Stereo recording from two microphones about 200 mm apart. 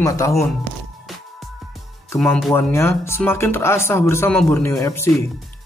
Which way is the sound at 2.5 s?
15° left (ahead or behind).